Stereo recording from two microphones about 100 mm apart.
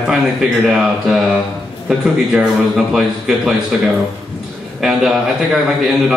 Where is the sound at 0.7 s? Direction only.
5° right (ahead or behind).